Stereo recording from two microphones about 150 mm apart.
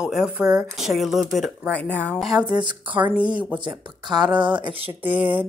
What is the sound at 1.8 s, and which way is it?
Speech, 10° left (ahead or behind).